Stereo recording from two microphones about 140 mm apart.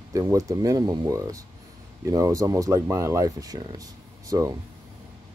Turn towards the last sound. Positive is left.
turn(degrees=-25)  # may be behind; listen again after turning